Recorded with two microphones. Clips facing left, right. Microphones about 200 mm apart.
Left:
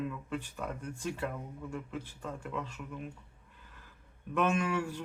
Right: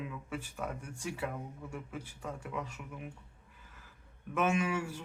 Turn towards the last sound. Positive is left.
turn(degrees=-10)  # may be behind; listen again after turning